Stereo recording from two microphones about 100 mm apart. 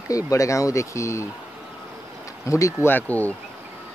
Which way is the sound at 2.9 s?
15° left (ahead or behind).